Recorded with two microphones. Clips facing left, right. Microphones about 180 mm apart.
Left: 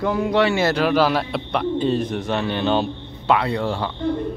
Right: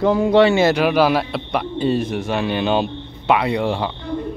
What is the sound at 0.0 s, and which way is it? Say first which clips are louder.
A man's voice: right 5 dB; 30° right (ahead or behind).